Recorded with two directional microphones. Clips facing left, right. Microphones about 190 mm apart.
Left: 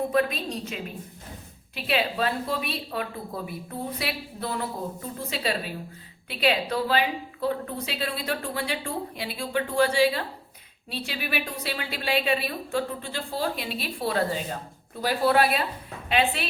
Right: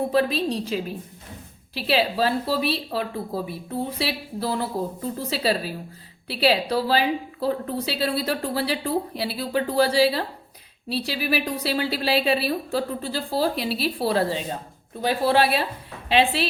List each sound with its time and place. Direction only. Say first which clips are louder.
0.1 s a woman's voice: right 4 dB; 30° right (ahead or behind)